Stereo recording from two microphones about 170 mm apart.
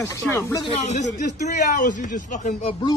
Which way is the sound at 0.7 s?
40° left (ahead or behind).